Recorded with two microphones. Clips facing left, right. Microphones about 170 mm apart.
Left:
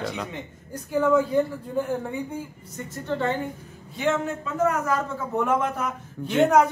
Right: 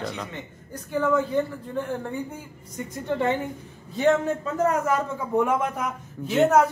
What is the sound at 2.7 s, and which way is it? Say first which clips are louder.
Speech: right 2 dB; 20° right (ahead or behind).